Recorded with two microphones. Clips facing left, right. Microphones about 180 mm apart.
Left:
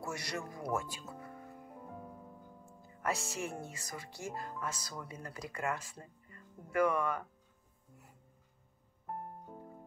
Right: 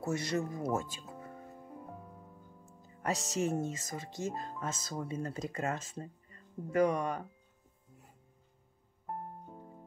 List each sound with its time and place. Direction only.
0.0 s speech: 20° right (ahead or behind)
0.5 s music: 25° right (ahead or behind)
3.1 s speech: 20° right (ahead or behind)